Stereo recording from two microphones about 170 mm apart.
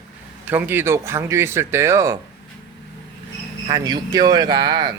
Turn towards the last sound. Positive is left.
turn(degrees=-25)  # may be behind; listen again after turning